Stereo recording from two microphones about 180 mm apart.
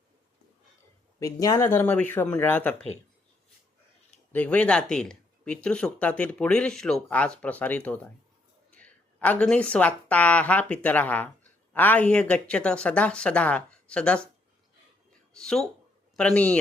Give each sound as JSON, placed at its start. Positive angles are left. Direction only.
{"t": 1.2, "sound": "speech", "side_deg": 20}
{"t": 4.3, "sound": "a woman's voice", "side_deg": 10}
{"t": 15.4, "sound": "speech", "side_deg": 5}